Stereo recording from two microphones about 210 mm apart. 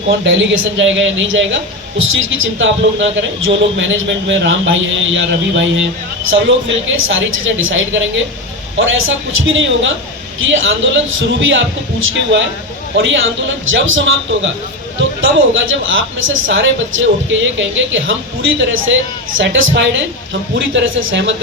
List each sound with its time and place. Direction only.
0.1 s a man's voice: 60° right (ahead or behind)
19.4 s a man's voice: 60° right (ahead or behind)